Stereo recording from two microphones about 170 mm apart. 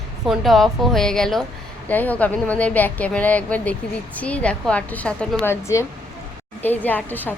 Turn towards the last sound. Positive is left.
turn(degrees=10)  # may be behind; listen again after turning